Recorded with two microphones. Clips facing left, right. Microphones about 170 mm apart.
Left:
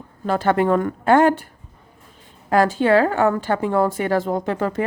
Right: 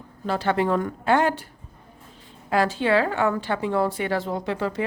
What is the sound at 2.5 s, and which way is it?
A woman's voice, 45° left (ahead or behind).